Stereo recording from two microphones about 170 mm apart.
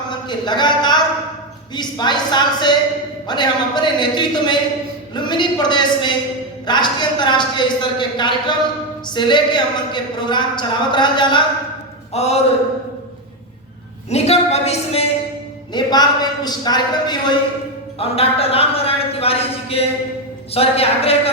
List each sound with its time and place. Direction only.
0.1 s speech: 25° left (ahead or behind)
12.1 s speech: 40° left (ahead or behind)
14.1 s speech: 40° left (ahead or behind)
15.7 s speech: 25° left (ahead or behind)
18.0 s speech: 35° left (ahead or behind)